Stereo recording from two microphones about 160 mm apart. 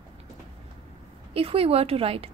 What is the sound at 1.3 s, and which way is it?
Speech, 35° right (ahead or behind).